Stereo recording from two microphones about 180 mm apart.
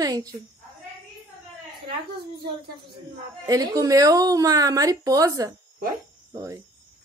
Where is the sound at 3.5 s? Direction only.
20° right (ahead or behind).